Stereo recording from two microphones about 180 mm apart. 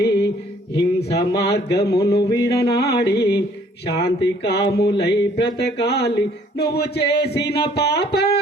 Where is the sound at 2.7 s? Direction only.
65° left (ahead or behind).